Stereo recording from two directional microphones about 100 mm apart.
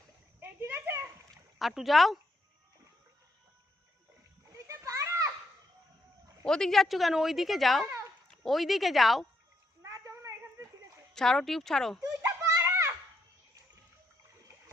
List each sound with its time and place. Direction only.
0.3 s a sound: 20° right (ahead or behind)
1.5 s speech: centre (ahead or behind)
4.5 s children playing: 30° right (ahead or behind)
6.4 s speech: 5° left (ahead or behind)
9.8 s a sound: 35° right (ahead or behind)
11.1 s speech: 5° left (ahead or behind)
12.2 s children playing: 25° right (ahead or behind)